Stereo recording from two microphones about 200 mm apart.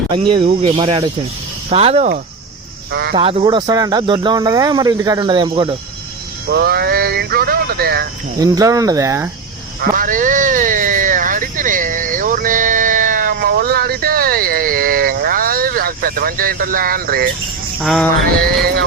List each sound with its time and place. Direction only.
0.3 s speech: 25° right (ahead or behind)
2.9 s speech: 55° right (ahead or behind)
3.2 s speech: 25° right (ahead or behind)
6.5 s speech: 55° right (ahead or behind)
8.4 s speech: 20° right (ahead or behind)
9.8 s a sound: 45° right (ahead or behind)
17.7 s jingle bell: centre (ahead or behind)
18.3 s speech: 50° right (ahead or behind)